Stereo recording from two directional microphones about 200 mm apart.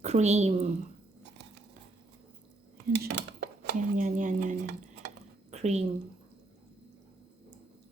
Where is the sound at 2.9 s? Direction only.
55° right (ahead or behind).